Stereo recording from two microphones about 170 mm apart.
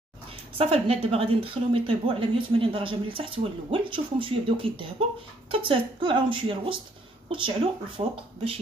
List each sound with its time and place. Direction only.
0.6 s a woman's voice: 35° right (ahead or behind)